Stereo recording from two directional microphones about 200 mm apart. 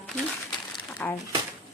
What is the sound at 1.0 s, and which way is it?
Speech, 5° left (ahead or behind).